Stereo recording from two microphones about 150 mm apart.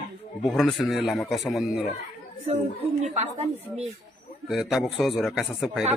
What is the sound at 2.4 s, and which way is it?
A woman's voice, 50° right (ahead or behind).